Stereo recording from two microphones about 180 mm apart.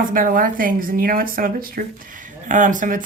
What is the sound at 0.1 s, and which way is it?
A woman's voice, 50° right (ahead or behind).